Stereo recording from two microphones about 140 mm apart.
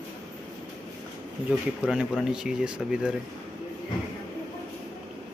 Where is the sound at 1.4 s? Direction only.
5° right (ahead or behind).